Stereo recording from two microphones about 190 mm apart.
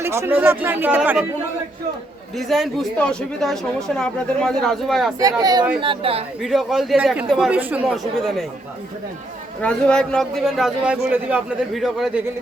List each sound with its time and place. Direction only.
0.0 s speech: 15° right (ahead or behind)
2.5 s speech: 5° left (ahead or behind)
5.2 s speech: 20° right (ahead or behind)
6.4 s speech: centre (ahead or behind)
9.6 s speech: 5° left (ahead or behind)